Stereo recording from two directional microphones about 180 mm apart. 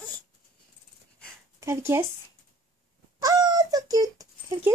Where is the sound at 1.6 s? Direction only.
15° right (ahead or behind).